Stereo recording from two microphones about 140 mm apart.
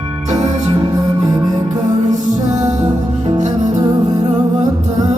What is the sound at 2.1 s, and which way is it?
Music, 60° right (ahead or behind).